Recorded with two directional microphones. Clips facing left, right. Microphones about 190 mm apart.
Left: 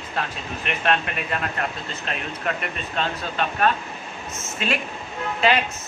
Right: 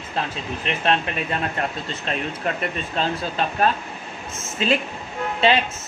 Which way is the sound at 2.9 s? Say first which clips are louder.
Right 1 dB; 35° right (ahead or behind).